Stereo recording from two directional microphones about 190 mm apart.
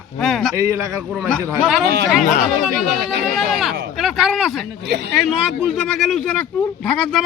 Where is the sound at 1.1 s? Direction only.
Centre (ahead or behind).